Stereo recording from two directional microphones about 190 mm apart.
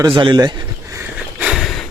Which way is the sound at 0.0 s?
25° right (ahead or behind).